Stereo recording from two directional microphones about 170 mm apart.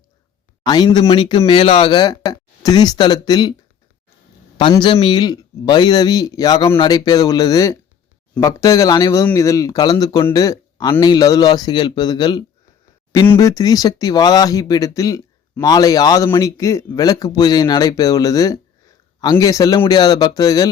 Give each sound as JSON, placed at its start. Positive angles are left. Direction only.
{"t": 0.6, "sound": "speech", "side_deg": 25}
{"t": 4.5, "sound": "speech", "side_deg": 30}